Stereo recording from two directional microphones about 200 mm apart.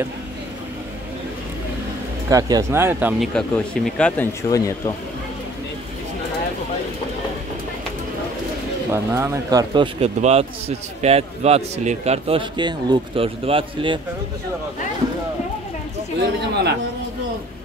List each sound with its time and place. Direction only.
2.2 s speech: 20° right (ahead or behind)
3.3 s speech: 5° left (ahead or behind)
8.9 s speech: 15° right (ahead or behind)
9.9 s a man's voice: 30° right (ahead or behind)
16.2 s speech: 55° right (ahead or behind)